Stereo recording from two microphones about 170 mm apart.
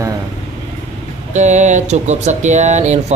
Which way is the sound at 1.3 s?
45° right (ahead or behind).